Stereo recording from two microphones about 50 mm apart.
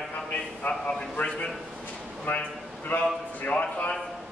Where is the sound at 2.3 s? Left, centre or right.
Left.